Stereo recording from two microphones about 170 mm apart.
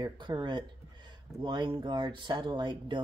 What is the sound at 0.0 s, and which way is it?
Speech, 25° right (ahead or behind).